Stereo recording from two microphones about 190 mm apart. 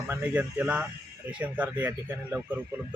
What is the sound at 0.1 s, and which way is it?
Speech, 10° right (ahead or behind).